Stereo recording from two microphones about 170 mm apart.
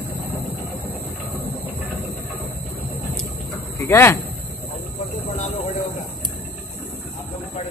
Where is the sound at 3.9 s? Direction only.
15° left (ahead or behind).